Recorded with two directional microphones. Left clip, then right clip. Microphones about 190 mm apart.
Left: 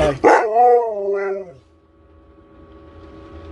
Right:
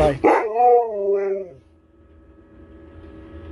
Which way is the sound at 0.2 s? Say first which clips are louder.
Left 4 dB; 20° left (ahead or behind).